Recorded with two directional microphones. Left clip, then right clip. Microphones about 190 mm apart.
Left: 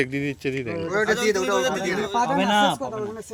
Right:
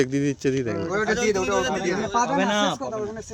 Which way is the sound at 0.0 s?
40° right (ahead or behind).